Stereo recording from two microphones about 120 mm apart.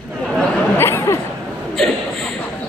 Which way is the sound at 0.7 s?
20° left (ahead or behind).